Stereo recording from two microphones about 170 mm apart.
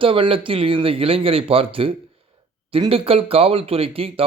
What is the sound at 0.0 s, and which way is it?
Speech, 30° right (ahead or behind).